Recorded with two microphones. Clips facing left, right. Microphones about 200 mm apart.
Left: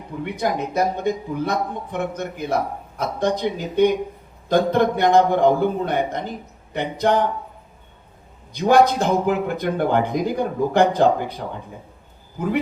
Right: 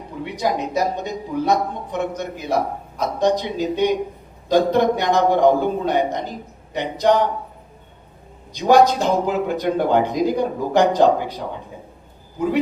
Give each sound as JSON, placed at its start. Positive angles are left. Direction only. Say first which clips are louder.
{"t": 0.3, "sound": "a man's voice", "louder": "right 1 dB", "side_deg": 55}
{"t": 8.5, "sound": "speech", "louder": "right 1 dB", "side_deg": 55}